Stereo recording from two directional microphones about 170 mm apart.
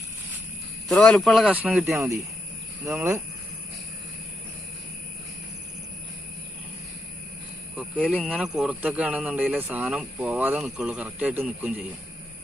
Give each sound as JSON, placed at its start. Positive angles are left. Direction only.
{"t": 0.8, "sound": "speech", "side_deg": 5}
{"t": 7.7, "sound": "speech", "side_deg": -10}